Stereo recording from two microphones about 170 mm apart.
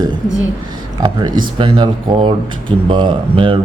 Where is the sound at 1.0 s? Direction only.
25° right (ahead or behind).